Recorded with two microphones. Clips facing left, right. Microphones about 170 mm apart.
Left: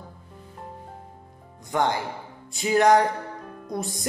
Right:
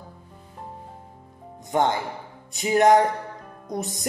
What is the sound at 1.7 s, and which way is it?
Speech, 20° right (ahead or behind).